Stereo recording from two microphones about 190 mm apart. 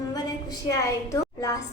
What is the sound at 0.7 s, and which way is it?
Speech, 15° left (ahead or behind).